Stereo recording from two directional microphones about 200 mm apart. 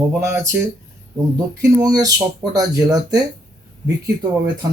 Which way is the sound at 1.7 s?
20° right (ahead or behind).